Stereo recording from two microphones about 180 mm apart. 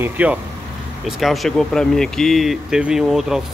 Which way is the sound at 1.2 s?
Centre (ahead or behind).